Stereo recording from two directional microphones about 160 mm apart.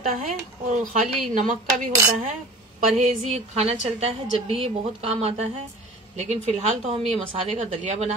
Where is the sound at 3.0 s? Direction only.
45° right (ahead or behind).